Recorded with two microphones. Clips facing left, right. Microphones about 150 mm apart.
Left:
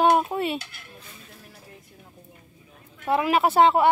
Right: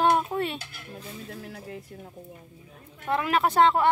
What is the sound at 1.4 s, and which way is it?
Speech, 90° right.